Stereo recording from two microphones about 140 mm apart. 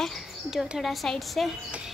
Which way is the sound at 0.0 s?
Centre (ahead or behind).